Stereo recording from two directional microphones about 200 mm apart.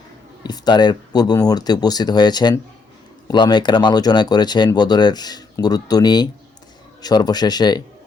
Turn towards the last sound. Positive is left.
turn(degrees=20)  # may be behind; listen again after turning